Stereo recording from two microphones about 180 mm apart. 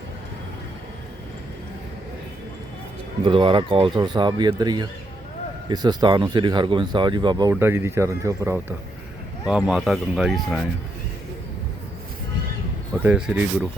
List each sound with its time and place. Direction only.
3.2 s speech: 30° right (ahead or behind)
7.5 s speech: 15° right (ahead or behind)
9.5 s speech: 5° right (ahead or behind)
13.0 s speech: 5° right (ahead or behind)